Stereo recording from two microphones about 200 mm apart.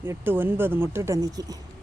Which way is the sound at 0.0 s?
10° right (ahead or behind).